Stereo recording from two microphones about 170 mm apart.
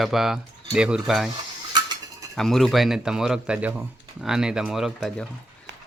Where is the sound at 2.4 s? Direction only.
Centre (ahead or behind).